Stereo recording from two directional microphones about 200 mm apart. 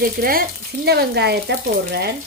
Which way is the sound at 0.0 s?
45° right (ahead or behind).